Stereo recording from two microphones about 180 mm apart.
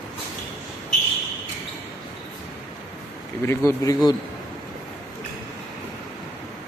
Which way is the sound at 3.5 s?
20° left (ahead or behind).